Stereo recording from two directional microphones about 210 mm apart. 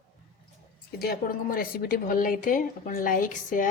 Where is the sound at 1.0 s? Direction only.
45° left (ahead or behind).